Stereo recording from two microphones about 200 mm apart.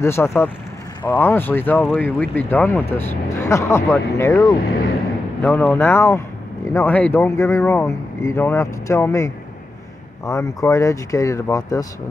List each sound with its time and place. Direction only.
0.0 s speech: 15° left (ahead or behind)